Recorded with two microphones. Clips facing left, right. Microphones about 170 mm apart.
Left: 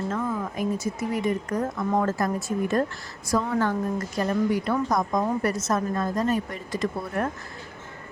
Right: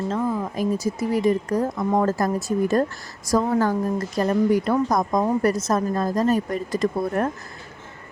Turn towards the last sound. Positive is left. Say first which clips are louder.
# right 5 dB
turn(degrees=-40)  # may be behind; listen again after turning